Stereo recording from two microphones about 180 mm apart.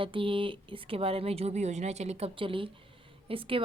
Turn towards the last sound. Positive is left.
turn(degrees=-30)  # may be behind; listen again after turning